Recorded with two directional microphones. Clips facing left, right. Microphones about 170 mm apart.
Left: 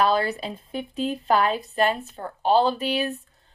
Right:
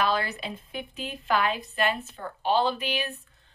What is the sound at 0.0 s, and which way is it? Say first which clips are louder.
Speech: left 5 dB; 35° left (ahead or behind).